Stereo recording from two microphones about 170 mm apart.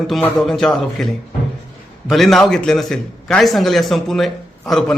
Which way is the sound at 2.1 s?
Centre (ahead or behind).